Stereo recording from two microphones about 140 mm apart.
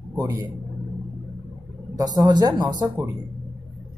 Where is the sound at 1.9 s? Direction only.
25° right (ahead or behind).